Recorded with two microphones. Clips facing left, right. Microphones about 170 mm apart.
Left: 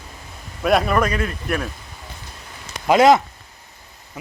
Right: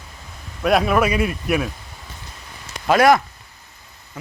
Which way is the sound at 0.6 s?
Centre (ahead or behind).